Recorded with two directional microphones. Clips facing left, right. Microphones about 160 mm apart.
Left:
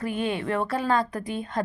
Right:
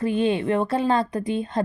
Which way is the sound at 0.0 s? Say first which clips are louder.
Right 6 dB; 25° right (ahead or behind).